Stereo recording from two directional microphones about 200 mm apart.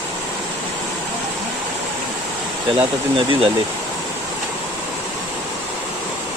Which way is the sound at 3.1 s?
25° right (ahead or behind).